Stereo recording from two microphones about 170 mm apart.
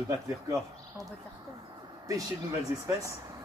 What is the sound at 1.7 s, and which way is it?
Vehicle, 20° right (ahead or behind).